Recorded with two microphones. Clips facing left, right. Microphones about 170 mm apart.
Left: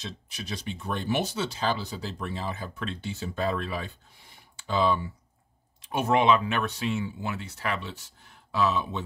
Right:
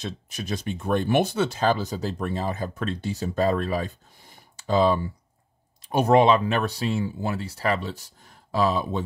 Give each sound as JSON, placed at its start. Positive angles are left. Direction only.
{"t": 0.0, "sound": "speech", "side_deg": -50}